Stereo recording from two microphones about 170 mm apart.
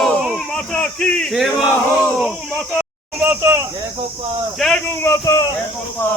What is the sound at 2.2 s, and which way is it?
Speech, centre (ahead or behind).